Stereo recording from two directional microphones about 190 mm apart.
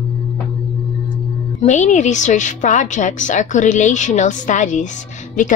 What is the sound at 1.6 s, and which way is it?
A woman's voice, 40° left (ahead or behind).